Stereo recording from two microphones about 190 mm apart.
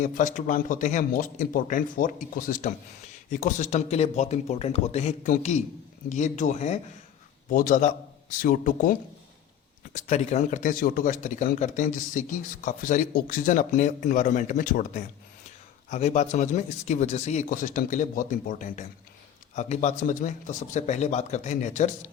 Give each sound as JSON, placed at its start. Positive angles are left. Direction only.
{"t": 0.0, "sound": "a man's voice", "side_deg": 40}
{"t": 7.5, "sound": "a man's voice", "side_deg": 45}